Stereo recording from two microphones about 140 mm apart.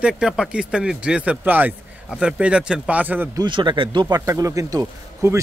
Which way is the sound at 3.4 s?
35° right (ahead or behind).